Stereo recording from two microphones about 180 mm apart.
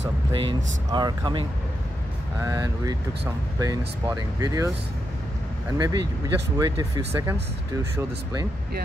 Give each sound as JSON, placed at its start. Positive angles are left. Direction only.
{"t": 0.0, "sound": "speech", "side_deg": -30}
{"t": 2.4, "sound": "speech", "side_deg": -15}
{"t": 5.8, "sound": "speech", "side_deg": -20}